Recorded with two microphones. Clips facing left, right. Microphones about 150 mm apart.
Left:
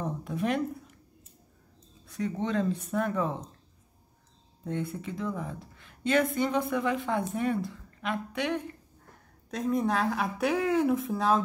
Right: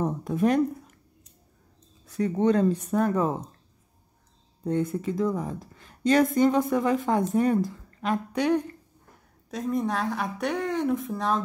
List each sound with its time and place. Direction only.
0.0 s speech: 45° right (ahead or behind)
2.0 s a woman's voice: 40° right (ahead or behind)
4.6 s a woman's voice: 40° right (ahead or behind)
9.5 s speech: centre (ahead or behind)